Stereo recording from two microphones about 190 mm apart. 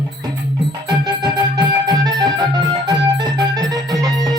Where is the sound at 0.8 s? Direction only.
20° right (ahead or behind).